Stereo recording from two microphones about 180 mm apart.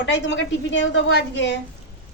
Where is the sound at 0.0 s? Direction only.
90° left.